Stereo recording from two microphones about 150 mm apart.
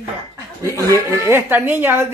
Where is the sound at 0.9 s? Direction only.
15° right (ahead or behind).